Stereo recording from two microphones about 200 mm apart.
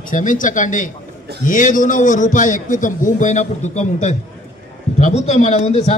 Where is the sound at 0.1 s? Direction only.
40° left (ahead or behind).